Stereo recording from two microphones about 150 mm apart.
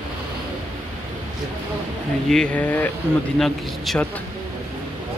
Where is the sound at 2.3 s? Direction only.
5° left (ahead or behind).